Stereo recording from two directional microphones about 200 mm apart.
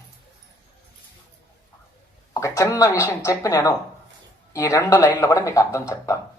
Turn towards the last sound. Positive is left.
turn(degrees=15)  # may be behind; listen again after turning